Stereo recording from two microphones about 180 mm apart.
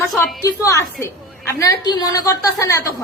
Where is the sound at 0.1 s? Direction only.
Centre (ahead or behind).